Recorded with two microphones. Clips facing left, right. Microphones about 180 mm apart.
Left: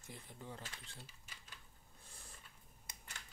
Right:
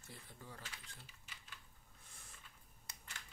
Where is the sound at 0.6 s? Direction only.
40° left (ahead or behind).